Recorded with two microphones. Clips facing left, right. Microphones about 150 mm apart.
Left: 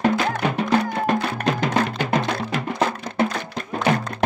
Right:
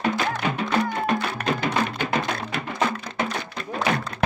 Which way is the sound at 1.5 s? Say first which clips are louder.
Left 3 dB; 90° left.